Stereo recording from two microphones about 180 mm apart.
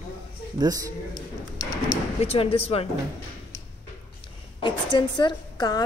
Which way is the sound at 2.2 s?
35° left (ahead or behind).